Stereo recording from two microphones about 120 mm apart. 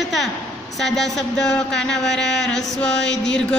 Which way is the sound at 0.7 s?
Centre (ahead or behind).